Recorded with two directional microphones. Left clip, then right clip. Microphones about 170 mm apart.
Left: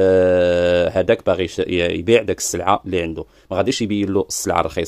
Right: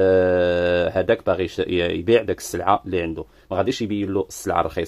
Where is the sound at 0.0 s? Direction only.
25° left (ahead or behind).